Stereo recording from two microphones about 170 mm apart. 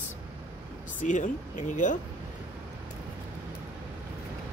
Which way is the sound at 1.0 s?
45° left (ahead or behind).